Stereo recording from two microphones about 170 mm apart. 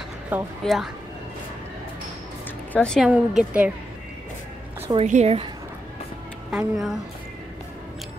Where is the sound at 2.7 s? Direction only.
5° left (ahead or behind).